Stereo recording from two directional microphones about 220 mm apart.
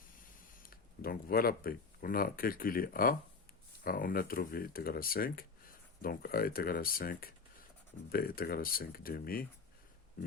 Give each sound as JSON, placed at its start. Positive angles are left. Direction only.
{"t": 0.6, "sound": "speech", "side_deg": 40}